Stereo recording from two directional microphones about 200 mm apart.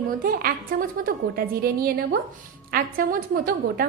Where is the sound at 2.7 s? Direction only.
50° right (ahead or behind).